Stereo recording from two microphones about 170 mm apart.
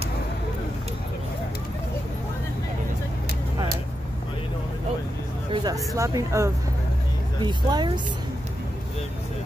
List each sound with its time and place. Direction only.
5.5 s speech: 25° right (ahead or behind)